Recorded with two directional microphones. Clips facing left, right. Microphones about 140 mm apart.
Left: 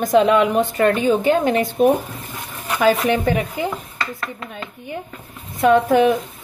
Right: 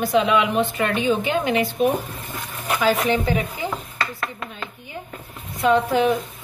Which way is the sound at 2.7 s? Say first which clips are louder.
Left 3 dB; 50° left (ahead or behind).